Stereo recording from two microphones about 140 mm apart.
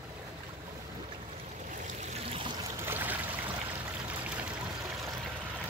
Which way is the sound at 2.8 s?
15° right (ahead or behind).